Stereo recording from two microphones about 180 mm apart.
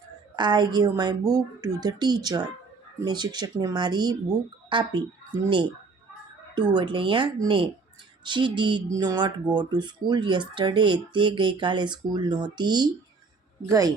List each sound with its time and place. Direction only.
0.3 s speech: 25° right (ahead or behind)
6.5 s speech: 25° right (ahead or behind)